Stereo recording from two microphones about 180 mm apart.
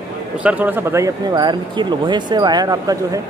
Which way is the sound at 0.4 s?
10° right (ahead or behind).